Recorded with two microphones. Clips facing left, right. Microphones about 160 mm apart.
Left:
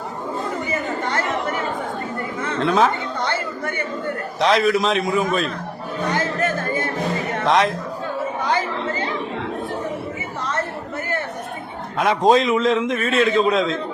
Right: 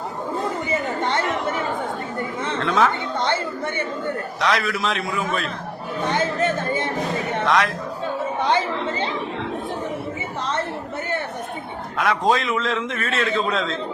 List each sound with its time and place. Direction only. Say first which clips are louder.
0.7 s chatter: right 2 dB; 25° right (ahead or behind)
2.6 s a man's voice: left 2 dB; 20° left (ahead or behind)
4.4 s a man's voice: left 7 dB; 25° left (ahead or behind)
6.1 s chatter: right 1 dB; 25° right (ahead or behind)
7.4 s speech: left 3 dB; 25° left (ahead or behind)
8.4 s chatter: right 2 dB; 25° right (ahead or behind)
11.9 s a man's voice: left 4 dB; 20° left (ahead or behind)